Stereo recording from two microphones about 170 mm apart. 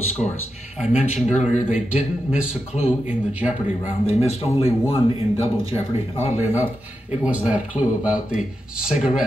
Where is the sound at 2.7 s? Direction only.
5° right (ahead or behind).